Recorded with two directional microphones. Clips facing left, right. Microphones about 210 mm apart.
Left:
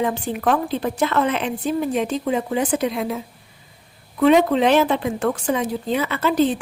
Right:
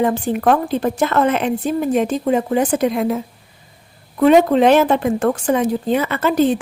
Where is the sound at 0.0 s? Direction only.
45° right (ahead or behind).